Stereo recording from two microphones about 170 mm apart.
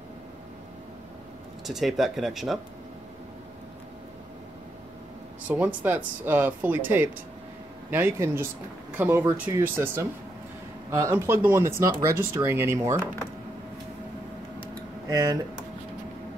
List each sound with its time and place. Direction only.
1.7 s speech: centre (ahead or behind)
5.5 s speech: 10° right (ahead or behind)
15.0 s speech: 25° right (ahead or behind)